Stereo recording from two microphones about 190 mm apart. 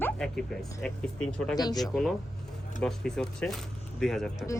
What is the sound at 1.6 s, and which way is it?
Speech, 20° left (ahead or behind).